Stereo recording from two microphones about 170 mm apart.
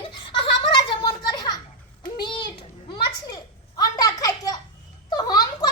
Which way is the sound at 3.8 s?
20° left (ahead or behind).